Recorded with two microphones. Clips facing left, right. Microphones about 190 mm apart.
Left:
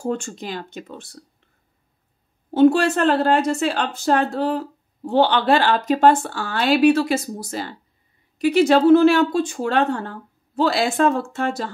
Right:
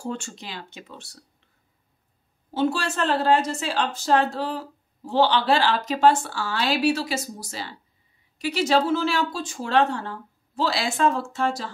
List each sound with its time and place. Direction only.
0.0 s speech: 50° left (ahead or behind)
2.5 s speech: 55° left (ahead or behind)